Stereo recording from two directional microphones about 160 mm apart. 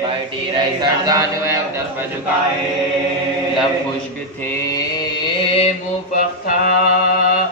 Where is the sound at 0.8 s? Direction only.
25° right (ahead or behind).